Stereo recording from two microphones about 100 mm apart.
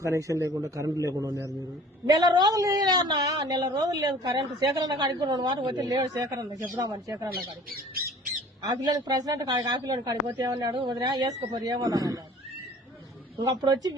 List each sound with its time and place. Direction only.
0.0 s a woman's voice: 30° right (ahead or behind)
8.6 s a man's voice: 45° right (ahead or behind)
13.4 s a woman's voice: 35° right (ahead or behind)